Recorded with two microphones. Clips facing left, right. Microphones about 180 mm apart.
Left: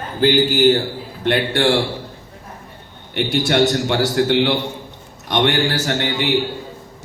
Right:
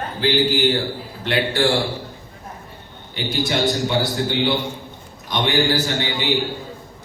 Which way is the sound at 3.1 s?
70° left (ahead or behind).